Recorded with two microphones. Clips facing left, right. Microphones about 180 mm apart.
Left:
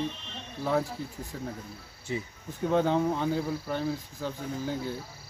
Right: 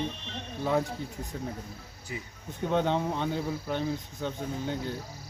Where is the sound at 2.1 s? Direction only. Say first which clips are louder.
Left 6 dB; 30° left (ahead or behind).